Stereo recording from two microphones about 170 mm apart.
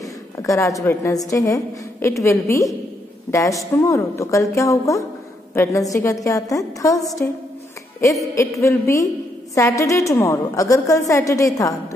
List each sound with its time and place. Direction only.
0.0 s a woman's voice: 20° left (ahead or behind)
8.4 s a woman's voice: 15° left (ahead or behind)